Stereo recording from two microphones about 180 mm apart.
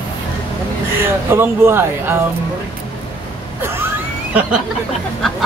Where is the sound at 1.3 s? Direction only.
15° right (ahead or behind).